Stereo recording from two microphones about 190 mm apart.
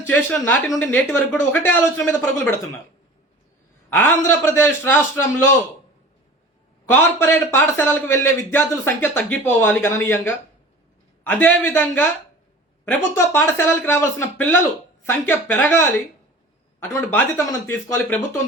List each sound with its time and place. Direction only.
0.0 s a man's voice: 10° left (ahead or behind)
3.8 s a man's voice: 10° left (ahead or behind)
6.9 s a man's voice: 10° left (ahead or behind)
16.9 s a man's voice: 10° left (ahead or behind)